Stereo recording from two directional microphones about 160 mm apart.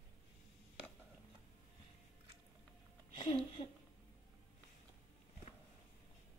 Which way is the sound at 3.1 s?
35° left (ahead or behind).